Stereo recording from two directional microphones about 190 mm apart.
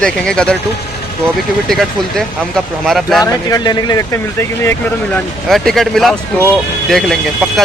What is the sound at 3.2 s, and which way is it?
Speech, 20° left (ahead or behind).